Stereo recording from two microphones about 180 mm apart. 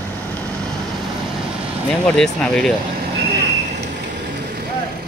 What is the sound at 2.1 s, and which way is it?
Speech, 5° left (ahead or behind).